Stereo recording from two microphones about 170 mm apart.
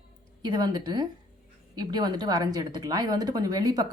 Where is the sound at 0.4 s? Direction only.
25° right (ahead or behind).